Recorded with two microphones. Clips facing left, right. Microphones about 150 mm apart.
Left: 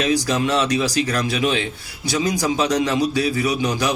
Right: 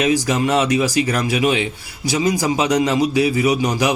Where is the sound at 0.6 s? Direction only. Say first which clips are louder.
Right 3 dB; 10° right (ahead or behind).